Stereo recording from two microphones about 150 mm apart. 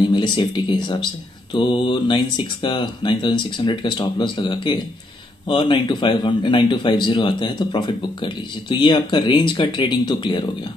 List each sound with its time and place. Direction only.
0.1 s speech: 30° left (ahead or behind)